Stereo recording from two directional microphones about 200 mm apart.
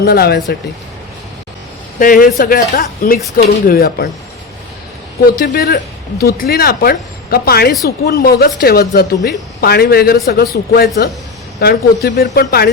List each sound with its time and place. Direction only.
0.0 s speech: 50° left (ahead or behind)
2.0 s speech: 45° left (ahead or behind)
5.4 s speech: 50° left (ahead or behind)